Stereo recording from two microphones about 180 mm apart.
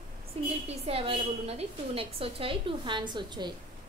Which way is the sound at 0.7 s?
30° right (ahead or behind).